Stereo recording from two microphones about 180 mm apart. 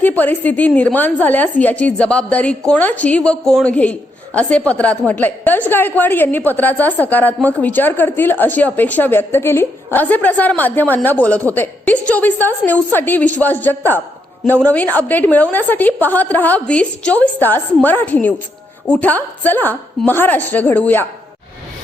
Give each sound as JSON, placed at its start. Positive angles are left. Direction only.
{"t": 0.0, "sound": "a woman's voice", "side_deg": 10}